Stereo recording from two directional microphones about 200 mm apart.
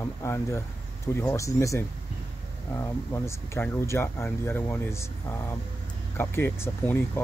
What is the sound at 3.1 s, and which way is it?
Speech, 15° left (ahead or behind).